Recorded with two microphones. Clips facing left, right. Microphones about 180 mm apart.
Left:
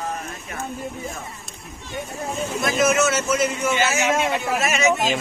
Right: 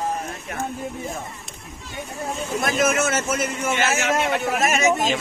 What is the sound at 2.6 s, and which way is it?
A man's voice, 50° right (ahead or behind).